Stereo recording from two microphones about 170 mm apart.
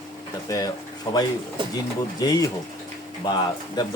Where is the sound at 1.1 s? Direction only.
25° left (ahead or behind).